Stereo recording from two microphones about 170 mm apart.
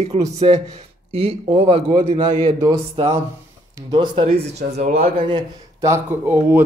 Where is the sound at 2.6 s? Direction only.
20° right (ahead or behind).